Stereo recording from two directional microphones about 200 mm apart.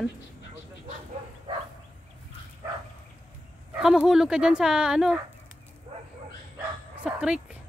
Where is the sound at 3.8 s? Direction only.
Centre (ahead or behind).